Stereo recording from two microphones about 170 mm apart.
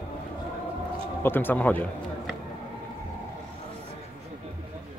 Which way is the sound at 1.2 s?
10° left (ahead or behind).